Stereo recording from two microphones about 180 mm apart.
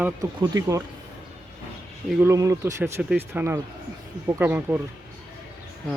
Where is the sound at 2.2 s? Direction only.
15° right (ahead or behind).